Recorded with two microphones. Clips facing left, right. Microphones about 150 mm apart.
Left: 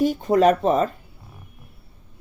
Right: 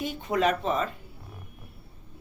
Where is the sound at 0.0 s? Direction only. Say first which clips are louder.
Left 9 dB; 40° left (ahead or behind).